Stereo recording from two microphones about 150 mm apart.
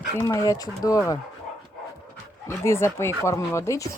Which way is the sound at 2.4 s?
20° left (ahead or behind).